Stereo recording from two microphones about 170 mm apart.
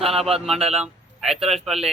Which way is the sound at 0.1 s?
35° right (ahead or behind).